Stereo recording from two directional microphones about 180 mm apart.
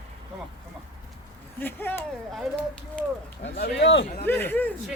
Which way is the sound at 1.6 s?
10° left (ahead or behind).